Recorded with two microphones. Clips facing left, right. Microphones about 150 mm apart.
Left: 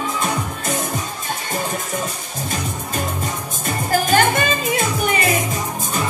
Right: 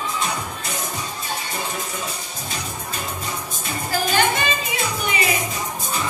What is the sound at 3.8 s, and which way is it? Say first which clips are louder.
Music: left 4 dB; 50° left (ahead or behind).